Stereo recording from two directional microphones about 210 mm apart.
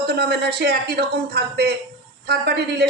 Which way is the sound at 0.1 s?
55° right (ahead or behind).